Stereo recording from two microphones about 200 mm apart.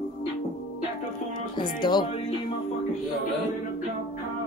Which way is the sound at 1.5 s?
20° left (ahead or behind).